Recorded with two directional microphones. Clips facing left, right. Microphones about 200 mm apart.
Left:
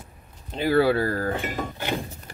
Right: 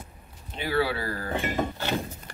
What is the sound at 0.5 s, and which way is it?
Speech, 45° left (ahead or behind).